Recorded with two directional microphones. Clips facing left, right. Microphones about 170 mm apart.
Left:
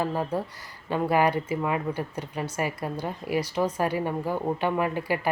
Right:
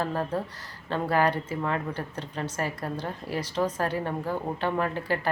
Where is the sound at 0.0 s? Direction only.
10° left (ahead or behind).